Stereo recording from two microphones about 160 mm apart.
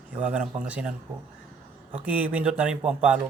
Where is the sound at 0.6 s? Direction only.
10° right (ahead or behind).